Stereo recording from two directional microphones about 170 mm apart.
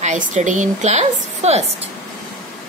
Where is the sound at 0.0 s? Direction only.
45° right (ahead or behind).